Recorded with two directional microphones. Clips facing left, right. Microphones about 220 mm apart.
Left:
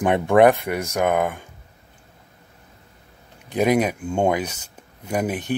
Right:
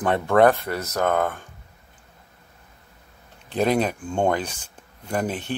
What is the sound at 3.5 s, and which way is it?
Speech, 10° left (ahead or behind).